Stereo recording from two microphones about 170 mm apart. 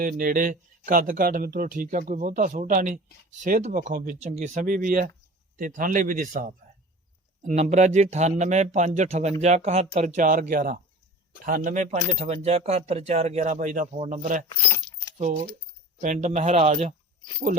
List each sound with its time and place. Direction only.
0.0 s a man's voice: 55° right (ahead or behind)
16.0 s a man's voice: 50° right (ahead or behind)